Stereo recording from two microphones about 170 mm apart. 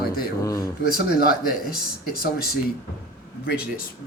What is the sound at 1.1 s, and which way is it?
Speech, 60° left (ahead or behind).